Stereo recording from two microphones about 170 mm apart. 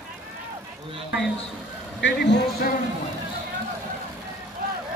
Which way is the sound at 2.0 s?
90° left.